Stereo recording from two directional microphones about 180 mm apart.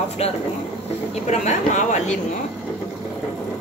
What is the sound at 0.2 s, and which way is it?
Speech, 35° left (ahead or behind).